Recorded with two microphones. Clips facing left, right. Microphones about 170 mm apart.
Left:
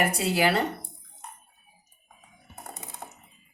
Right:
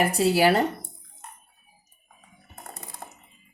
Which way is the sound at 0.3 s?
35° right (ahead or behind).